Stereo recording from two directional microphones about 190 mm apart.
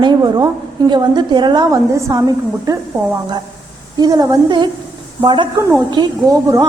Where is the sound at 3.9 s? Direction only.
20° right (ahead or behind).